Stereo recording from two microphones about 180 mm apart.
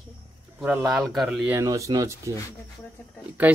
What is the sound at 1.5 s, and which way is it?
Speech, 20° right (ahead or behind).